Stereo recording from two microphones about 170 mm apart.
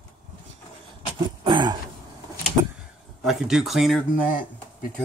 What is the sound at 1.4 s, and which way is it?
Throat clearing, 25° right (ahead or behind).